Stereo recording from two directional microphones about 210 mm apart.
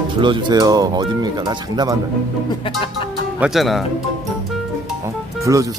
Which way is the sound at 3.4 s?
Centre (ahead or behind).